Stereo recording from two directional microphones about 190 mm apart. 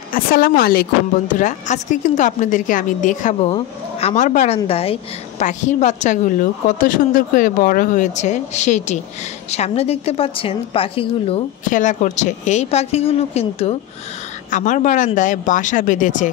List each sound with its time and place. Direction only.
0.1 s speech: 50° left (ahead or behind)
1.3 s a woman's voice: 40° left (ahead or behind)
11.7 s a woman's voice: 40° left (ahead or behind)